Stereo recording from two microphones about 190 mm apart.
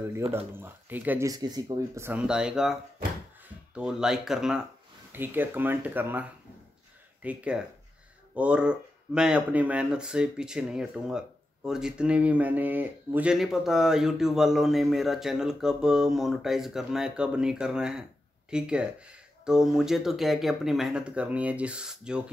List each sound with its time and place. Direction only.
0.6 s speech: 10° right (ahead or behind)
7.2 s speech: 5° right (ahead or behind)